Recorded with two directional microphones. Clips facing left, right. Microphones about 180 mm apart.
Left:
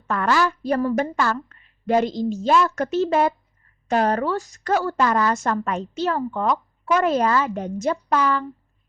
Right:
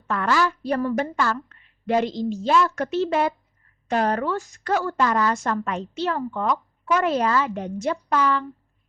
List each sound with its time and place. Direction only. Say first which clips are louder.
0.1 s a woman's voice: left 1 dB; 40° left (ahead or behind)